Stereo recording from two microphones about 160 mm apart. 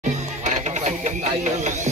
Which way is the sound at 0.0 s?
50° right (ahead or behind).